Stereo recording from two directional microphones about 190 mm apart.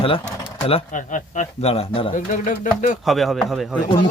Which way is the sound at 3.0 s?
Centre (ahead or behind).